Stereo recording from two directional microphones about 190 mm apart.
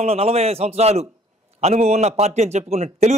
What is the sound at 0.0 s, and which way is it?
A man's voice, 30° right (ahead or behind).